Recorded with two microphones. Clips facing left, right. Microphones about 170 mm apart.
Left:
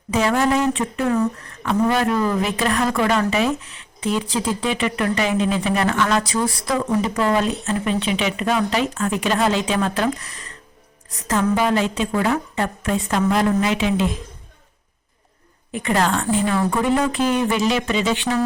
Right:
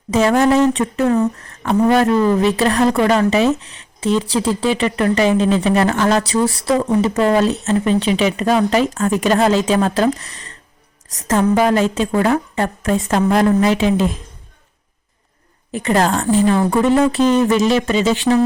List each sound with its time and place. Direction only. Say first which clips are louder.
0.1 s speech: right 5 dB; 45° right (ahead or behind)
7.3 s speech: right 5 dB; 40° right (ahead or behind)
11.1 s speech: right 5 dB; 40° right (ahead or behind)
15.7 s speech: right 4 dB; 35° right (ahead or behind)